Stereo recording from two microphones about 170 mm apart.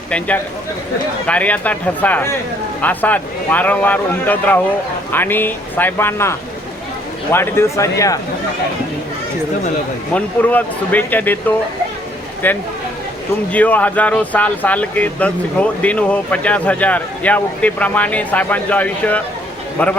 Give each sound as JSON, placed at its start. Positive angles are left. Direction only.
{"t": 1.3, "sound": "speech", "side_deg": 10}
{"t": 10.2, "sound": "speech", "side_deg": 10}